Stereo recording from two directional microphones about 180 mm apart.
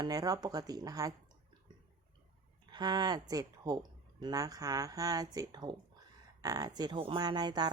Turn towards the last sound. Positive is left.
turn(degrees=-25)  # may be behind; listen again after turning